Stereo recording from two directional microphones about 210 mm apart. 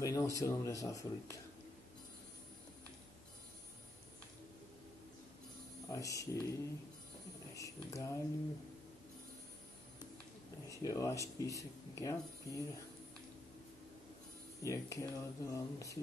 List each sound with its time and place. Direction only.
0.0 s speech: 15° left (ahead or behind)
5.9 s speech: 15° left (ahead or behind)
7.5 s speech: 15° left (ahead or behind)
10.7 s speech: 15° left (ahead or behind)
14.6 s speech: 15° left (ahead or behind)